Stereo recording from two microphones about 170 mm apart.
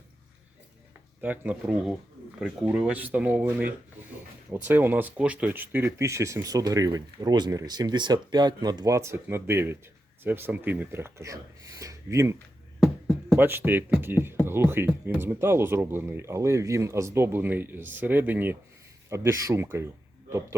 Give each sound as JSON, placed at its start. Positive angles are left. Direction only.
{"t": 1.2, "sound": "speech", "side_deg": -10}